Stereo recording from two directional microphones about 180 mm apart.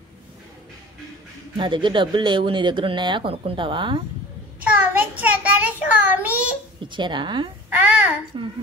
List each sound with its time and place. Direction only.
1.6 s speech: 25° right (ahead or behind)
4.6 s child singing: 10° right (ahead or behind)
5.8 s a child's voice: 10° right (ahead or behind)
6.8 s speech: 25° right (ahead or behind)
7.7 s a child's voice: 10° right (ahead or behind)
8.3 s speech: 25° right (ahead or behind)